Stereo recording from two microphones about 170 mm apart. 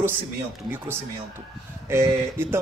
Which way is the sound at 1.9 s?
15° right (ahead or behind).